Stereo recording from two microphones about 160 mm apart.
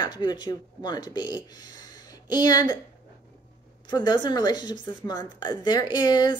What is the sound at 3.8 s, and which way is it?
A woman's voice, 25° left (ahead or behind).